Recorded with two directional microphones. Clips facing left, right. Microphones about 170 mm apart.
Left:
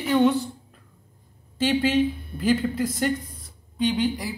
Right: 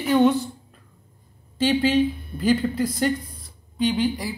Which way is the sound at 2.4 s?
35° right (ahead or behind).